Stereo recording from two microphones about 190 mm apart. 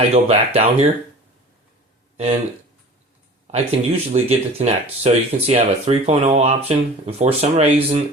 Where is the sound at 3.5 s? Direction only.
35° right (ahead or behind).